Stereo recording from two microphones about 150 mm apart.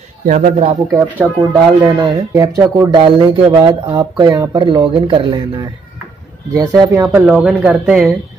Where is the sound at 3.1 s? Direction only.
35° right (ahead or behind).